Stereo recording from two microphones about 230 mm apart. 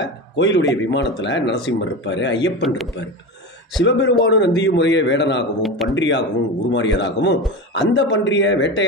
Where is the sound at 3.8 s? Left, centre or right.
Left.